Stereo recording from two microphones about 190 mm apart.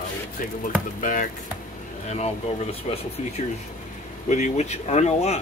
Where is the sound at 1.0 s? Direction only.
45° left (ahead or behind).